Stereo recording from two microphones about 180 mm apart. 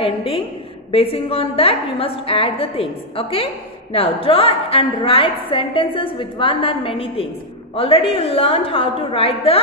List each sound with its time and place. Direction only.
0.0 s a woman's voice: 30° left (ahead or behind)